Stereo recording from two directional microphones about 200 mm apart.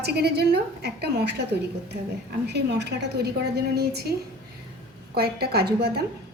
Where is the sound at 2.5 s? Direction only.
55° right (ahead or behind).